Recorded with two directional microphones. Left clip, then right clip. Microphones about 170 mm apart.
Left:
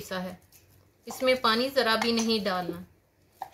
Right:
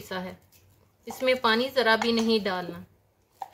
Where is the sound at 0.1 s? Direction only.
20° right (ahead or behind).